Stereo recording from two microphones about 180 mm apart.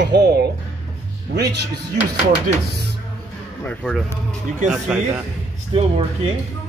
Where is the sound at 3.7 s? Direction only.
5° left (ahead or behind).